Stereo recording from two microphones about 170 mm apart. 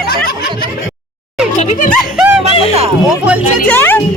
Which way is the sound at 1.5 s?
40° left (ahead or behind).